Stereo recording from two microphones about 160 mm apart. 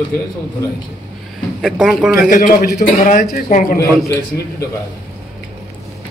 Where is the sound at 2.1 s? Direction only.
65° left (ahead or behind).